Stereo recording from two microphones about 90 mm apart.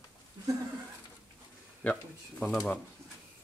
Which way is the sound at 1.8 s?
10° left (ahead or behind).